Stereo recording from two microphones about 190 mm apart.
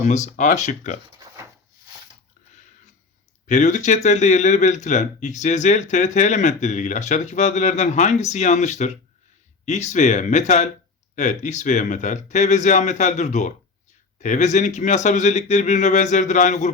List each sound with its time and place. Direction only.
0.1 s speech: 40° left (ahead or behind)
3.4 s speech: 40° left (ahead or behind)